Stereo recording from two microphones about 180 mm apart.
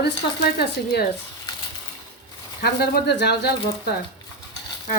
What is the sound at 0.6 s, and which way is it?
Speech, 65° left (ahead or behind).